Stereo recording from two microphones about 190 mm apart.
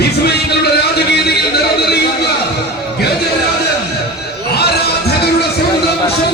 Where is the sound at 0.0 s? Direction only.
60° left (ahead or behind).